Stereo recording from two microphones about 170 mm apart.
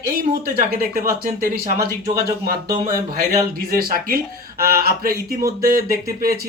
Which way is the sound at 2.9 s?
20° right (ahead or behind).